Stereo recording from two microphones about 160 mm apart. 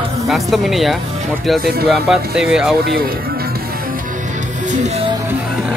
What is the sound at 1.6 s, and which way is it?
Speech, 75° right (ahead or behind).